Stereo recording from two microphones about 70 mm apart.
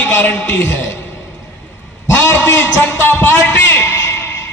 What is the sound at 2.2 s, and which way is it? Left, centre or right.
A man's voice, left.